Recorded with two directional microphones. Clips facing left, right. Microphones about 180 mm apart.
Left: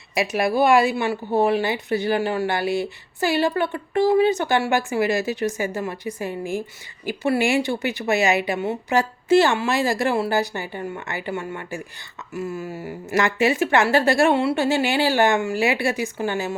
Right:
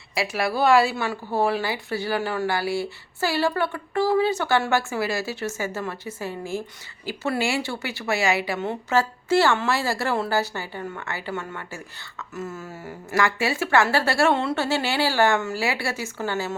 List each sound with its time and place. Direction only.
0.1 s speech: 20° left (ahead or behind)